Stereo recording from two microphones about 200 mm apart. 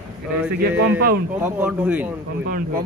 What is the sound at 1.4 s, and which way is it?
Speech, 10° right (ahead or behind).